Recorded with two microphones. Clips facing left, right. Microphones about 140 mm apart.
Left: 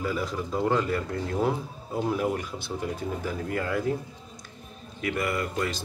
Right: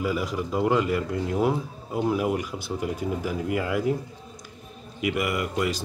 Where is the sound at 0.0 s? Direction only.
10° right (ahead or behind).